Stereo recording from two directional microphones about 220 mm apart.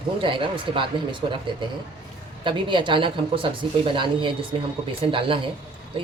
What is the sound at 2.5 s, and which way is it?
Speech, 20° right (ahead or behind).